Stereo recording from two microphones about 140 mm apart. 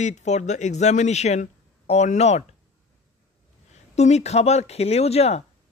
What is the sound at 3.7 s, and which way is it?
A woman's voice, 55° left (ahead or behind).